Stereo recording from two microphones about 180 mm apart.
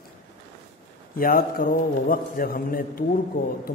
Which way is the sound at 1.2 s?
50° left (ahead or behind).